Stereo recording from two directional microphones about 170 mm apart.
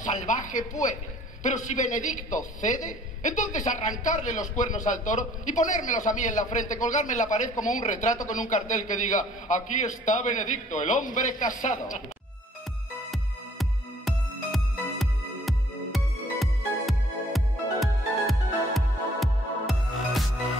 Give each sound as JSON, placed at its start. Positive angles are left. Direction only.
{"t": 0.0, "sound": "a sound", "side_deg": 45}
{"t": 1.4, "sound": "a man's voice", "side_deg": 45}
{"t": 13.1, "sound": "music", "side_deg": 0}